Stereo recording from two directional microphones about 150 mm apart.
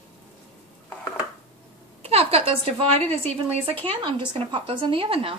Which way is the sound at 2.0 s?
40° right (ahead or behind).